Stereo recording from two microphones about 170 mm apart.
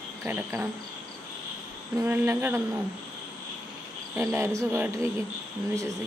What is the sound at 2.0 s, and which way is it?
Speech, 10° right (ahead or behind).